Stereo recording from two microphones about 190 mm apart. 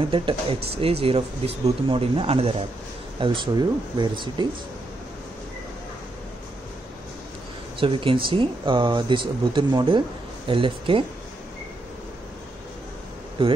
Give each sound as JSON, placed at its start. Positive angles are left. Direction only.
{"t": 0.1, "sound": "speech", "side_deg": -25}
{"t": 7.8, "sound": "speech", "side_deg": -25}
{"t": 13.4, "sound": "speech", "side_deg": -30}